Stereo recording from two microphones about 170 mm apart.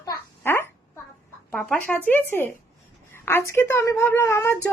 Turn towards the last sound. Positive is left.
turn(degrees=15)  # may be behind; listen again after turning